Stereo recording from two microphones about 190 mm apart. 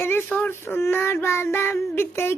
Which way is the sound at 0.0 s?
10° left (ahead or behind).